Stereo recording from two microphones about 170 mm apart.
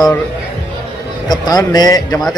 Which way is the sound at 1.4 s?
25° left (ahead or behind).